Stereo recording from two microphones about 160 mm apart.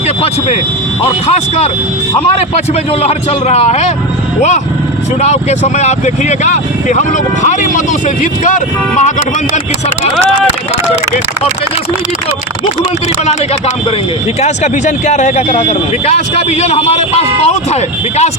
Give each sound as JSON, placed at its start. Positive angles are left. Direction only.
{"t": 0.2, "sound": "a man's voice", "side_deg": 40}
{"t": 3.0, "sound": "a man's voice", "side_deg": 40}
{"t": 14.4, "sound": "a man's voice", "side_deg": 45}